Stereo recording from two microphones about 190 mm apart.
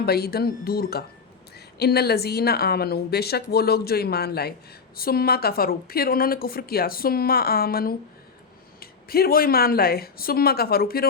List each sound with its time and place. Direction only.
0.0 s a woman's voice: 55° left (ahead or behind)